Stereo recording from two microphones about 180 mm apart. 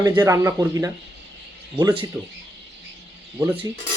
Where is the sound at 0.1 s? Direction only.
15° right (ahead or behind).